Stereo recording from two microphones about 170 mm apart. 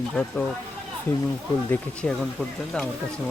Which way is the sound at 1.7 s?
5° left (ahead or behind).